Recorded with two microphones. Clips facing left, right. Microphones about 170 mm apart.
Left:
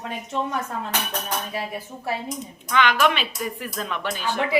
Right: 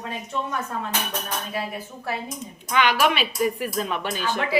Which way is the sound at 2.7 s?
10° right (ahead or behind).